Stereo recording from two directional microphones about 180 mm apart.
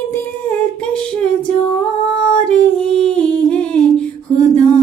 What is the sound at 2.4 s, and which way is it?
Humming, 5° left (ahead or behind).